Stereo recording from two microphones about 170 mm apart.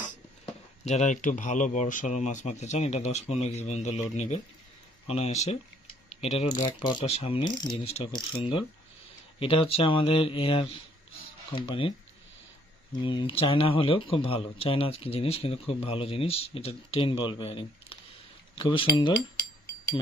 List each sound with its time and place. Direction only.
0.8 s speech: 45° left (ahead or behind)
6.5 s speech: 25° left (ahead or behind)
7.1 s speech: 35° left (ahead or behind)
13.0 s speech: 30° left (ahead or behind)